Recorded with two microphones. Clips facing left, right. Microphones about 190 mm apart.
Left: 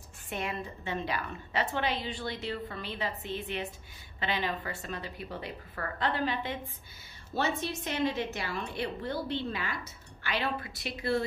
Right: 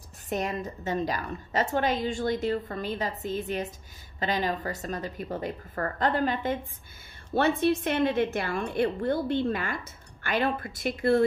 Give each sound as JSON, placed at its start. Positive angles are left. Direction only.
{"t": 0.3, "sound": "a woman's voice", "side_deg": -40}
{"t": 7.3, "sound": "a woman's voice", "side_deg": -55}